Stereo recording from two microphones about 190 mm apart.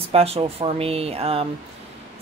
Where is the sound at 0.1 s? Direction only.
30° right (ahead or behind).